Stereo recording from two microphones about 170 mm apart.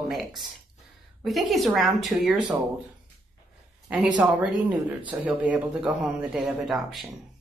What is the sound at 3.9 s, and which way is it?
Speech, 5° right (ahead or behind).